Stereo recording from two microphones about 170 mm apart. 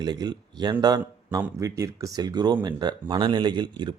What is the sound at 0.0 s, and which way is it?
A man's voice, 20° right (ahead or behind).